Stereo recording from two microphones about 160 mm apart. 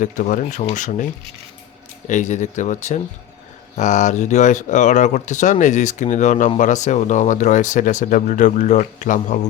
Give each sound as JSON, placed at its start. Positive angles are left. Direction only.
{"t": 0.0, "sound": "speech", "side_deg": 55}
{"t": 2.0, "sound": "speech", "side_deg": 50}